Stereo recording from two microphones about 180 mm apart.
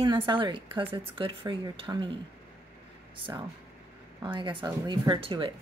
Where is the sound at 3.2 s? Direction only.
30° right (ahead or behind).